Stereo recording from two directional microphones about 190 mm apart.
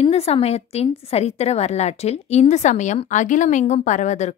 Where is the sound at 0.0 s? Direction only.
30° left (ahead or behind).